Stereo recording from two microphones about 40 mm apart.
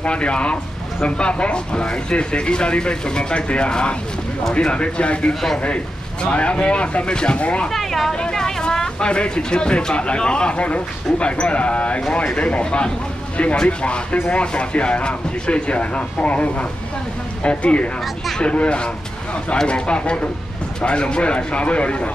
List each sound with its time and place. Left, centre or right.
0.0 s speech: left
7.7 s speech: centre; by 22.1 s left